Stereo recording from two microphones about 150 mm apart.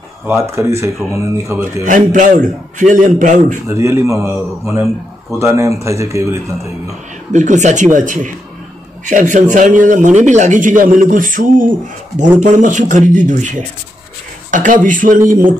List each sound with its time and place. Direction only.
0.6 s speech: 20° right (ahead or behind)
1.9 s a man's voice: 60° right (ahead or behind)
3.6 s a man's voice: 20° right (ahead or behind)
7.3 s a man's voice: 50° right (ahead or behind)